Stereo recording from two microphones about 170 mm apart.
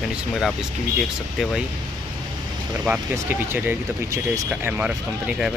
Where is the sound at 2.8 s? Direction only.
10° right (ahead or behind).